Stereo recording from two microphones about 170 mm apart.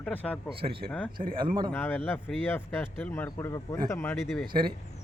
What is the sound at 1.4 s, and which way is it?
Speech, 30° right (ahead or behind).